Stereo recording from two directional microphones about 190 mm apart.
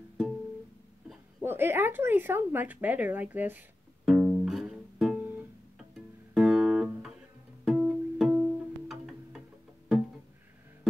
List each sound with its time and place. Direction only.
1.4 s a sound: 10° right (ahead or behind)
5.8 s music: centre (ahead or behind)
7.6 s pizzicato: 5° right (ahead or behind)